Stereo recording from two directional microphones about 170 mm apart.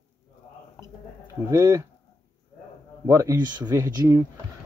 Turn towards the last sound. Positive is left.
turn(degrees=-20)  # may be behind; listen again after turning